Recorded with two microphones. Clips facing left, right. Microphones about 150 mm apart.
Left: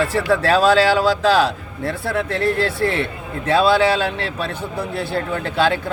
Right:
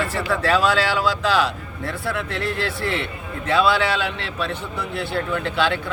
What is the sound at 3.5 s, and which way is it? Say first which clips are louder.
Speech: left 4 dB; 35° left (ahead or behind).